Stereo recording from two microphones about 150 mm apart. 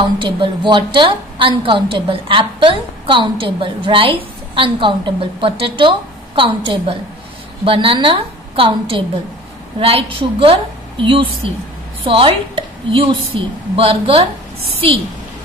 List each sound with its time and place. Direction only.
0.2 s a woman's voice: 35° right (ahead or behind)